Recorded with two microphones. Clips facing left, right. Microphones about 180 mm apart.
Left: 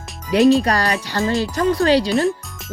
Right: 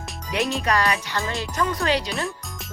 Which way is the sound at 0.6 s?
35° left (ahead or behind).